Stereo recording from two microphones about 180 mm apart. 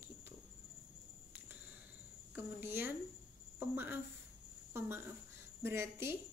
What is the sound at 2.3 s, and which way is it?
A woman's voice, 10° right (ahead or behind).